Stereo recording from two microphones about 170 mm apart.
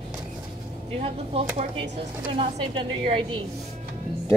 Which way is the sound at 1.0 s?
35° right (ahead or behind).